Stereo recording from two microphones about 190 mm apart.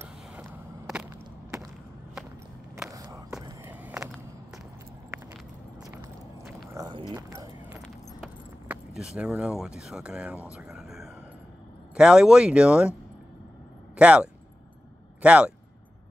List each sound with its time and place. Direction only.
0.0 s a sound: 15° right (ahead or behind)
2.9 s a sound: 20° right (ahead or behind)
6.7 s horse: 20° right (ahead or behind)
8.2 s keys jangling: 5° right (ahead or behind)
11.9 s speech: 5° right (ahead or behind)
13.9 s speech: 5° right (ahead or behind)